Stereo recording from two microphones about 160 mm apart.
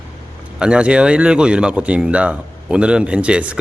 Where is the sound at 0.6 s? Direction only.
5° right (ahead or behind).